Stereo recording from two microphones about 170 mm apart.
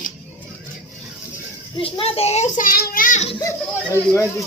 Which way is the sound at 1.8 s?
35° left (ahead or behind).